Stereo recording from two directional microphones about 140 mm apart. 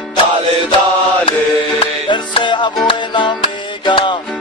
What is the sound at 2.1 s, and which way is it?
Music, 35° left (ahead or behind).